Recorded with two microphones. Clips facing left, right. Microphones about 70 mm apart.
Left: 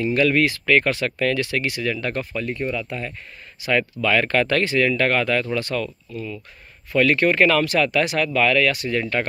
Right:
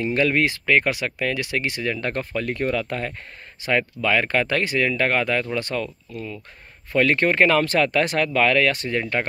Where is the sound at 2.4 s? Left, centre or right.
Right.